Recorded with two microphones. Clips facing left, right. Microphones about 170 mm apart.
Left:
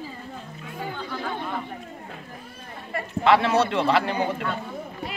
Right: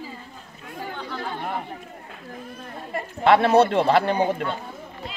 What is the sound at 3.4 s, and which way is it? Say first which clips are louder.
Speech: right 5 dB; 50° right (ahead or behind).